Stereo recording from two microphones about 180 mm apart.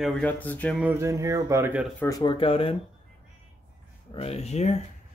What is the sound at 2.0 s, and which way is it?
Speech, 20° left (ahead or behind).